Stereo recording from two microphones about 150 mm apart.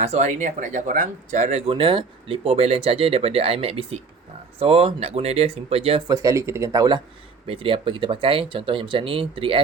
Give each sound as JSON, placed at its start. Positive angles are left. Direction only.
{"t": 0.0, "sound": "speech", "side_deg": -50}
{"t": 6.1, "sound": "speech", "side_deg": -25}
{"t": 7.4, "sound": "speech", "side_deg": -40}